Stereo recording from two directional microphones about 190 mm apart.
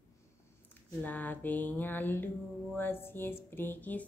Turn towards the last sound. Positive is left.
turn(degrees=10)  # may be behind; listen again after turning